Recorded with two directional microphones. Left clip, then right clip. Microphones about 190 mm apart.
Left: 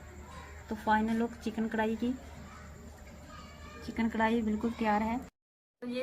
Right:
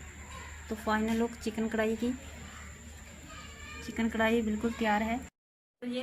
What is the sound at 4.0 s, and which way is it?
Speech, 15° right (ahead or behind).